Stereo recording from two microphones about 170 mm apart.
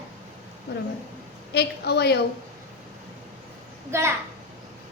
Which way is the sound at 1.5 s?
75° left (ahead or behind).